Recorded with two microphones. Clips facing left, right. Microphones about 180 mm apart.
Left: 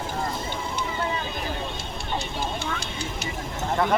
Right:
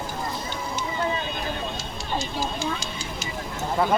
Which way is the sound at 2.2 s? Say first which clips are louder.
Right 2 dB; 60° left (ahead or behind).